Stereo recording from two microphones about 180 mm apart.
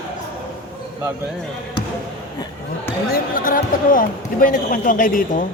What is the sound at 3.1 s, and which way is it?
Speech, 50° left (ahead or behind).